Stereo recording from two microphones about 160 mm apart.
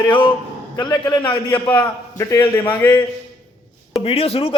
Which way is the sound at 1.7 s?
15° left (ahead or behind).